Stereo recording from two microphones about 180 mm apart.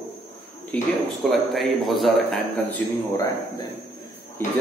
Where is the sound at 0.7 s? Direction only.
Centre (ahead or behind).